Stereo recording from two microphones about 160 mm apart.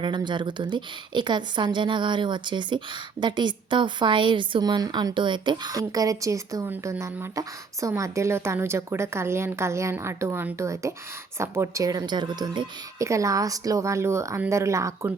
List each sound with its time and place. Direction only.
0.0 s a woman's voice: 30° right (ahead or behind)